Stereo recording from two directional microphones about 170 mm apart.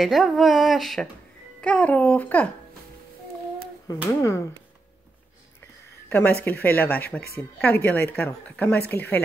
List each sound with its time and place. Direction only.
0.0 s speech: centre (ahead or behind)
3.8 s speech: 15° left (ahead or behind)
6.0 s speech: 10° left (ahead or behind)